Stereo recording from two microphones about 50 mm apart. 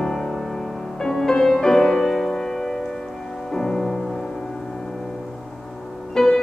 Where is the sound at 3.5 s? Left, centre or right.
Centre.